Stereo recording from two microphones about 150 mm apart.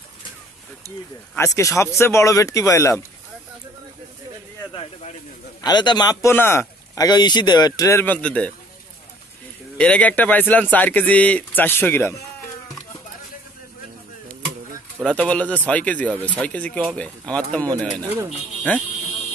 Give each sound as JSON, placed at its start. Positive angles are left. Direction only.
{"t": 1.3, "sound": "speech", "side_deg": 20}
{"t": 5.6, "sound": "speech", "side_deg": 30}
{"t": 6.3, "sound": "speech", "side_deg": 15}
{"t": 7.1, "sound": "speech", "side_deg": 30}
{"t": 9.8, "sound": "a man's voice", "side_deg": 10}
{"t": 15.0, "sound": "a man's voice", "side_deg": 10}
{"t": 18.0, "sound": "speech", "side_deg": -15}